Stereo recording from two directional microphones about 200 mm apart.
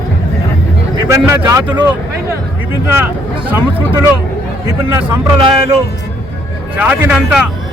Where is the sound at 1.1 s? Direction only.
15° right (ahead or behind).